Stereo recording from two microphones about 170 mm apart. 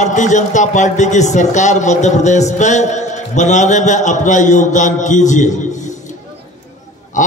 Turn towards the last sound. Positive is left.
turn(degrees=50)  # may be behind; listen again after turning